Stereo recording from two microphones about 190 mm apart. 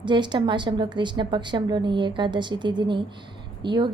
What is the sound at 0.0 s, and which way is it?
A woman's voice, 25° right (ahead or behind).